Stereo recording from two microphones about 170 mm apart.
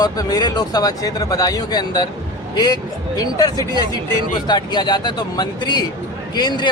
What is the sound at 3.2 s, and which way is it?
Speech, 20° left (ahead or behind).